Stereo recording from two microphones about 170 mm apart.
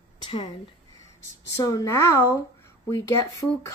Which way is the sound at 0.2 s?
30° left (ahead or behind).